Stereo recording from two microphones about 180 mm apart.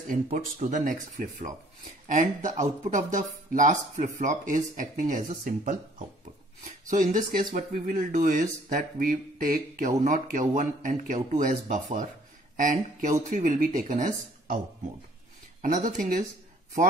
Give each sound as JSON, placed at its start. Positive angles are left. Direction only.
{"t": 0.1, "sound": "speech", "side_deg": -45}
{"t": 15.6, "sound": "speech", "side_deg": -45}